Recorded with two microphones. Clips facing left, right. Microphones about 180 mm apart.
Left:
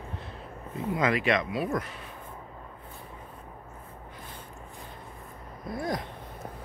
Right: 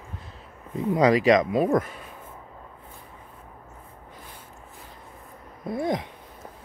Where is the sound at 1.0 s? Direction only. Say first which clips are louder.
Right 8 dB; 35° right (ahead or behind).